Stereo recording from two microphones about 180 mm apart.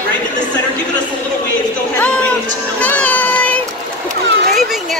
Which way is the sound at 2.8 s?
10° left (ahead or behind).